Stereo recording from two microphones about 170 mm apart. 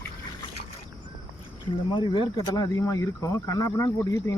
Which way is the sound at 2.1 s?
25° left (ahead or behind).